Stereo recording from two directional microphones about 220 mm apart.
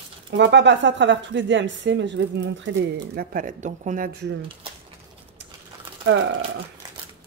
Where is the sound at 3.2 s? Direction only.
35° right (ahead or behind).